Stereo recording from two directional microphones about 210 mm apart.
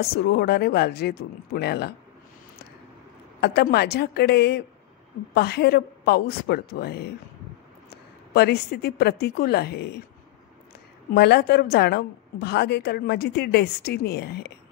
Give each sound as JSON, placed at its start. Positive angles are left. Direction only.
{"t": 0.0, "sound": "a woman's voice", "side_deg": 50}
{"t": 3.3, "sound": "a woman's voice", "side_deg": 50}
{"t": 11.1, "sound": "a woman's voice", "side_deg": 50}